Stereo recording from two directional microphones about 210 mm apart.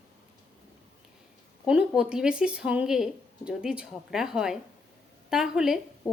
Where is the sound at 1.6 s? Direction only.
5° right (ahead or behind).